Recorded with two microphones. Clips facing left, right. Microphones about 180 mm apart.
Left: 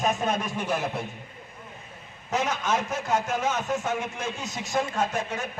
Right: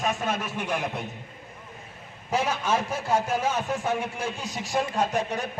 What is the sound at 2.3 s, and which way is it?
Speech, 10° right (ahead or behind).